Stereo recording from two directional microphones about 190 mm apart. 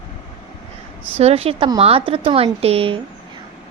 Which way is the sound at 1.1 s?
30° right (ahead or behind).